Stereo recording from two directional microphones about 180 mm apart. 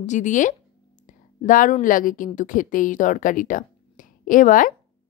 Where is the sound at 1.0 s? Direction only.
45° left (ahead or behind).